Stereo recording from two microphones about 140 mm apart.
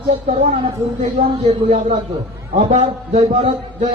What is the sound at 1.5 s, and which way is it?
A man's voice, 50° right (ahead or behind).